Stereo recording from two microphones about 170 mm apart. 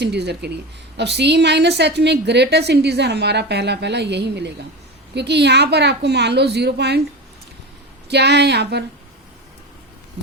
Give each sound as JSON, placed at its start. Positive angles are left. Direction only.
{"t": 0.0, "sound": "a woman's voice", "side_deg": -80}
{"t": 8.1, "sound": "a woman's voice", "side_deg": -80}